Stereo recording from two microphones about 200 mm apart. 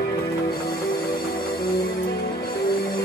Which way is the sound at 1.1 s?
50° left (ahead or behind).